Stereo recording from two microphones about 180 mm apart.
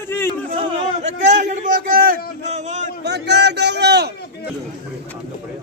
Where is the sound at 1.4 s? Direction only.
45° right (ahead or behind).